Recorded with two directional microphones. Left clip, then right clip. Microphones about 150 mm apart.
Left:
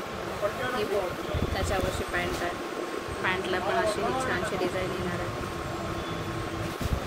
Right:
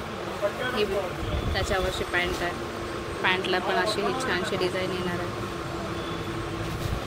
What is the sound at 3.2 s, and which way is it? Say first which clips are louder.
Speech: right 4 dB; 55° right (ahead or behind).